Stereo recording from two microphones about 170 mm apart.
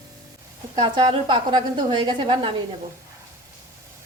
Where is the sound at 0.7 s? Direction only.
25° right (ahead or behind).